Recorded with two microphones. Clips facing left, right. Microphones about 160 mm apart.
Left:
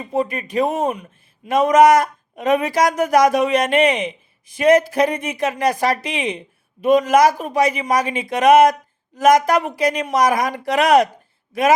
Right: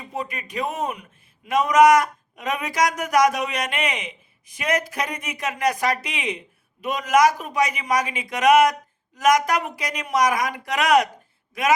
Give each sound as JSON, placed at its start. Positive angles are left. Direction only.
{"t": 0.1, "sound": "speech", "side_deg": 30}